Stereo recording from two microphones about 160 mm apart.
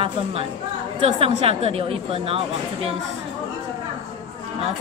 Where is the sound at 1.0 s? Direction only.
35° right (ahead or behind).